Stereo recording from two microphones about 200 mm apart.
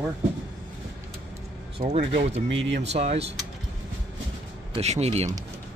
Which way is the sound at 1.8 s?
40° right (ahead or behind).